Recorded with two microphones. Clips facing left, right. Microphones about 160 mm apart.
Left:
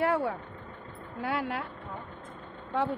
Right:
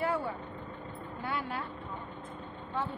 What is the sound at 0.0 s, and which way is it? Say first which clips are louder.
Speech: left 5 dB; 75° left (ahead or behind).